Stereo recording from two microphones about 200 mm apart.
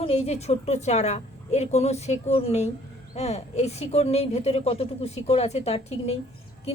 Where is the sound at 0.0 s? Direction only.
30° left (ahead or behind).